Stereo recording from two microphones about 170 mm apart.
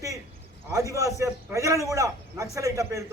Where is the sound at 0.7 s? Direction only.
15° right (ahead or behind).